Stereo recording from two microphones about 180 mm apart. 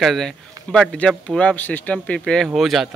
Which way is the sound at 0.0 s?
Centre (ahead or behind).